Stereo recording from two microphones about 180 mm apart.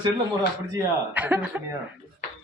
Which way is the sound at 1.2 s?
10° right (ahead or behind).